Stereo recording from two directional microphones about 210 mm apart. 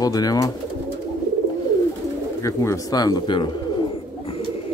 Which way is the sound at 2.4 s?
15° left (ahead or behind).